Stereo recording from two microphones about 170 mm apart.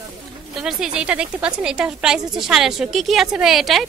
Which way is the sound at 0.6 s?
5° right (ahead or behind).